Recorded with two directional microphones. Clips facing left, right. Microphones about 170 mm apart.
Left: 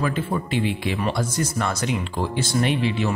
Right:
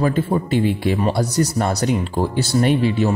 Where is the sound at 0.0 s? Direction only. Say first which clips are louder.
Right 6 dB; 40° right (ahead or behind).